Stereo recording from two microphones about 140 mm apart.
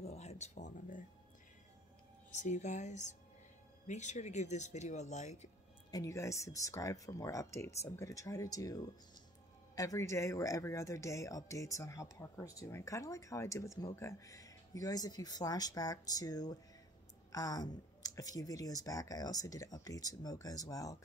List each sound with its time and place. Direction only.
0.0 s speech: 50° left (ahead or behind); by 1.0 s 65° left (ahead or behind)
2.3 s speech: 60° left (ahead or behind)
5.9 s speech: 25° left (ahead or behind)